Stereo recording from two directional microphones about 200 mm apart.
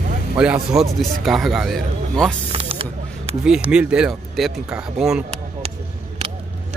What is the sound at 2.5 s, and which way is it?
Spray, 30° right (ahead or behind).